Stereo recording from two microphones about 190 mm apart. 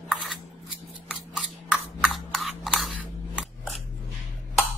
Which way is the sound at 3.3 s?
Centre (ahead or behind).